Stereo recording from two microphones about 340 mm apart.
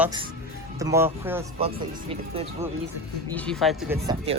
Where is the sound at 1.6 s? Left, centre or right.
Centre.